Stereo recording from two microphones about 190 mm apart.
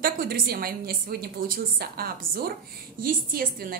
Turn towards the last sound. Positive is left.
turn(degrees=-50)  # may be behind; listen again after turning